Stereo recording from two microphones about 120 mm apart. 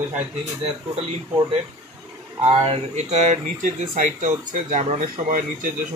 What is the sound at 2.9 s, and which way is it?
Speech, 70° right (ahead or behind).